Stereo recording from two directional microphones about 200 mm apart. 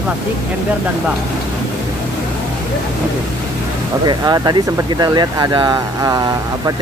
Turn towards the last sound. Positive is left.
turn(degrees=-20)  # may be behind; listen again after turning